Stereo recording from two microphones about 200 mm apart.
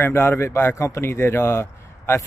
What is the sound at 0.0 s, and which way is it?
A man's voice, 10° left (ahead or behind).